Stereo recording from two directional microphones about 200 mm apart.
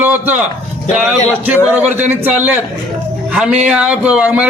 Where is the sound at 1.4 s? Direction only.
10° right (ahead or behind).